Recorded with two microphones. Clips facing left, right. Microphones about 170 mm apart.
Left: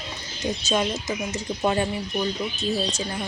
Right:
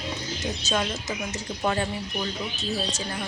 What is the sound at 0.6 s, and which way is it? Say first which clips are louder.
Speech: left 3 dB; 10° left (ahead or behind).